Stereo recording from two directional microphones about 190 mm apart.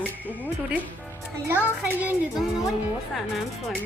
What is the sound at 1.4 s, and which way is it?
Speech, 10° right (ahead or behind).